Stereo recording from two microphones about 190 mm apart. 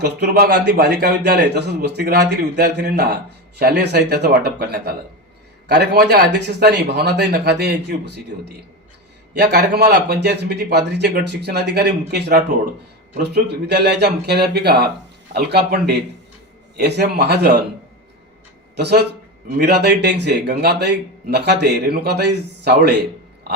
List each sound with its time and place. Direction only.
0.0 s speech: 60° right (ahead or behind)
18.8 s speech: 60° right (ahead or behind)